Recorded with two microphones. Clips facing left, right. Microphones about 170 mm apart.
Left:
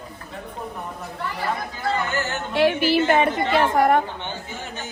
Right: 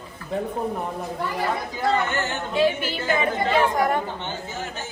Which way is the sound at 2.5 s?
70° left (ahead or behind).